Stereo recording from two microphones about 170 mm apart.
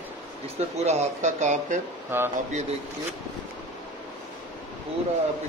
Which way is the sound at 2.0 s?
15° right (ahead or behind).